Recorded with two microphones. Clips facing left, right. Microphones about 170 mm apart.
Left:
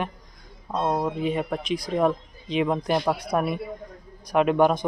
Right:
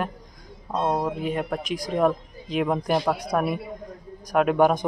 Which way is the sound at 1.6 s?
45° right (ahead or behind).